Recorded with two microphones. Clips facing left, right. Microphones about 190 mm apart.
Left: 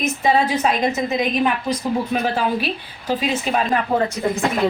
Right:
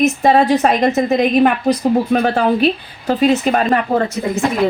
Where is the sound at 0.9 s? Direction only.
55° right (ahead or behind).